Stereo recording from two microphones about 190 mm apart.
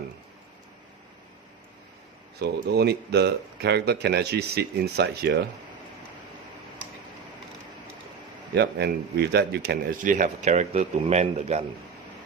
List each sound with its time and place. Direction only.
2.4 s speech: 60° right (ahead or behind)
8.5 s speech: 60° right (ahead or behind)
10.1 s a man's voice: 40° right (ahead or behind)